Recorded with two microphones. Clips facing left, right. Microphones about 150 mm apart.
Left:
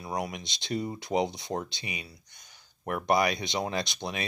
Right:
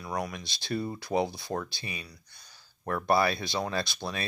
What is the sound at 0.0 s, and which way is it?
Speech, 20° left (ahead or behind).